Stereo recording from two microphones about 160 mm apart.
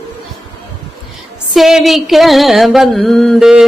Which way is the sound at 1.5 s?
Centre (ahead or behind).